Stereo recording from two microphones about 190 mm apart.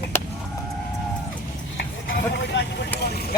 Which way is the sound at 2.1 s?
65° left (ahead or behind).